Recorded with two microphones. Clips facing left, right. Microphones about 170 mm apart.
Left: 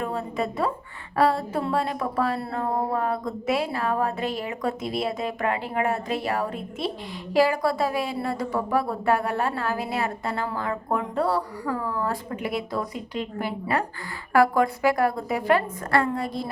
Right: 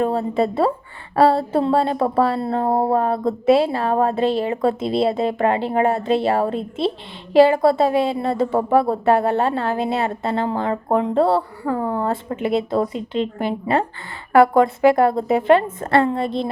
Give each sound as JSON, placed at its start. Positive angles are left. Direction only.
{"t": 0.0, "sound": "speech", "side_deg": -30}